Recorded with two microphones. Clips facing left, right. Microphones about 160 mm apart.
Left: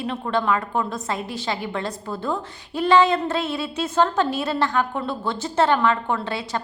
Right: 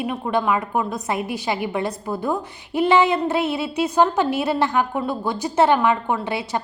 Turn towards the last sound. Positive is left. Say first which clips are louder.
# right 2 dB
turn(degrees=-20)  # may be behind; listen again after turning